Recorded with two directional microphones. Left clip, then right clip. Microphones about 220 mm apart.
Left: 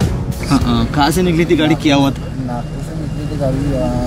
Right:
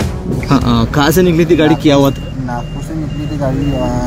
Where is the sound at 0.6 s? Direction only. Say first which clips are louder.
Right 1 dB; 40° right (ahead or behind).